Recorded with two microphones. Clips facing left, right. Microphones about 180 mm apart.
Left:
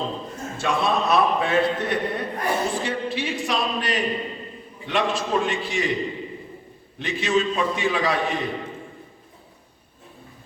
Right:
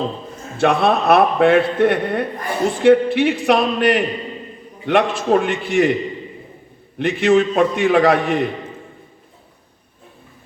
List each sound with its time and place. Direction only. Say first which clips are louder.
0.6 s a man's voice: right 7 dB; 60° right (ahead or behind)
7.0 s a man's voice: right 8 dB; 60° right (ahead or behind)